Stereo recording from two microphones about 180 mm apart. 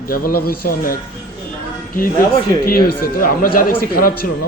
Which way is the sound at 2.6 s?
55° left (ahead or behind).